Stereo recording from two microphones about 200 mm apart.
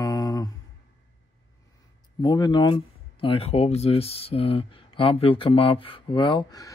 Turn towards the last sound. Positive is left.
turn(degrees=20)  # may be behind; listen again after turning